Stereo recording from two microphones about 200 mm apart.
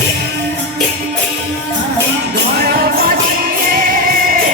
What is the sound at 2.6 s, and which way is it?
Music, 50° right (ahead or behind).